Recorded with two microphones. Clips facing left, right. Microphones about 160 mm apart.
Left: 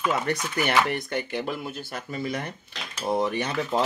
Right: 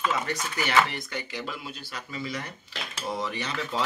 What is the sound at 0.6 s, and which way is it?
Speech, 55° left (ahead or behind).